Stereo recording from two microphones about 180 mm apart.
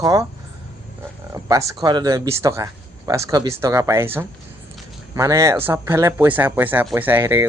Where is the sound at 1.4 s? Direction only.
20° right (ahead or behind).